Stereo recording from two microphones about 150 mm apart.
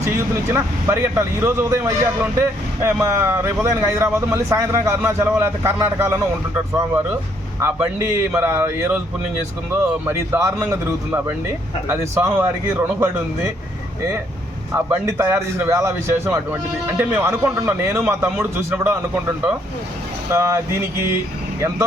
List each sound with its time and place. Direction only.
0.5 s speech: 20° right (ahead or behind)
7.6 s speech: 15° right (ahead or behind)
10.1 s speech: 15° right (ahead or behind)
14.8 s a man's voice: 20° right (ahead or behind)